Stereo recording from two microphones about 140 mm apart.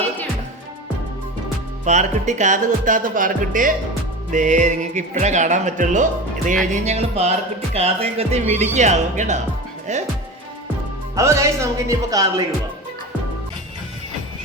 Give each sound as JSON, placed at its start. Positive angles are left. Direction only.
{"t": 1.8, "sound": "speech", "side_deg": -55}
{"t": 4.3, "sound": "speech", "side_deg": -60}
{"t": 6.8, "sound": "music", "side_deg": -50}
{"t": 8.7, "sound": "speech", "side_deg": -55}
{"t": 11.1, "sound": "speech", "side_deg": -20}